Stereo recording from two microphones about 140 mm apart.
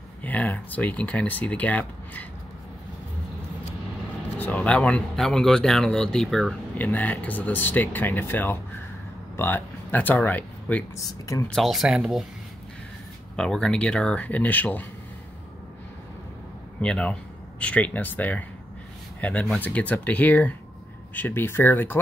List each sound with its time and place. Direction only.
0.2 s speech: 10° left (ahead or behind)
4.4 s speech: 10° left (ahead or behind)
11.0 s speech: 25° left (ahead or behind)
11.4 s speech: centre (ahead or behind)
13.4 s speech: 5° left (ahead or behind)
16.8 s speech: 5° left (ahead or behind)